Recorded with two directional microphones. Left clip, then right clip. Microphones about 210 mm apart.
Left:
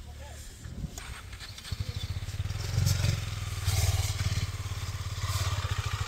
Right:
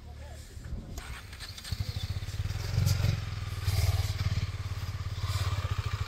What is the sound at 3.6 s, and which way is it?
Motorcycle, 45° left (ahead or behind).